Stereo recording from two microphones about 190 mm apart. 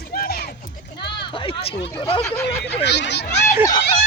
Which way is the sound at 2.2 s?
15° left (ahead or behind).